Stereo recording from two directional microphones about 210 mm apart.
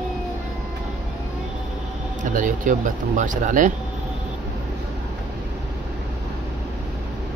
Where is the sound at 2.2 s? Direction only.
35° right (ahead or behind).